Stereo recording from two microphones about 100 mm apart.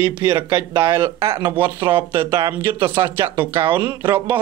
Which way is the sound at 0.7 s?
25° right (ahead or behind).